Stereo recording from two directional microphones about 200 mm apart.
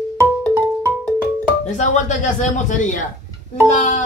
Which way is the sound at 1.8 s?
40° left (ahead or behind).